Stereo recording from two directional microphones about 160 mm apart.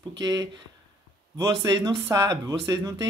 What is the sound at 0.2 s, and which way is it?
Speech, 25° right (ahead or behind).